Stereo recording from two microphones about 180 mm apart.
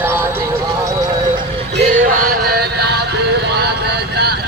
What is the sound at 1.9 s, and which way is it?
Music, 50° right (ahead or behind).